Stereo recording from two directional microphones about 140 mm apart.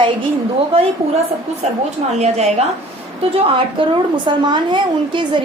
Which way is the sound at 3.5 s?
35° right (ahead or behind).